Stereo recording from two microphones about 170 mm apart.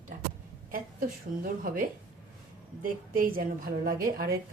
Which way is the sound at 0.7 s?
55° right (ahead or behind).